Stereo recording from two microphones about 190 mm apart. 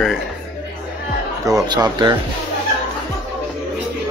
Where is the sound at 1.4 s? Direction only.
20° right (ahead or behind).